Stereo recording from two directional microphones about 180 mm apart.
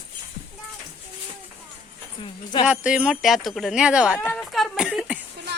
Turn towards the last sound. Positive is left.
turn(degrees=-5)  # may be behind; listen again after turning